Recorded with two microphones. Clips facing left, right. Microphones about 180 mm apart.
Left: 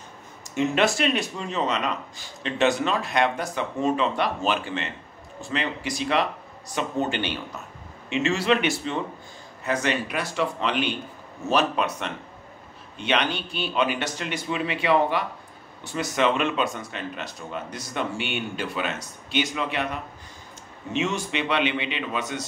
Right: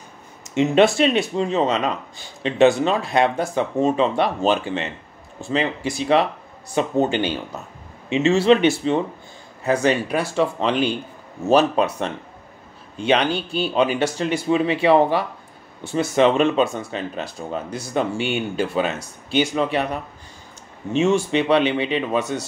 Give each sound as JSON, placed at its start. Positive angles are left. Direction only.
{"t": 0.4, "sound": "speech", "side_deg": -25}
{"t": 13.1, "sound": "speech", "side_deg": -35}
{"t": 21.0, "sound": "speech", "side_deg": -30}